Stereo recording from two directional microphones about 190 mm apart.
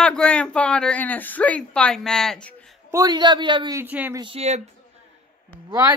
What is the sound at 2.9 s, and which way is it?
Speech, 20° right (ahead or behind).